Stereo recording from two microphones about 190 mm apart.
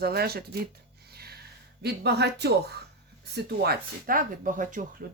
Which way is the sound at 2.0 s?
60° right (ahead or behind).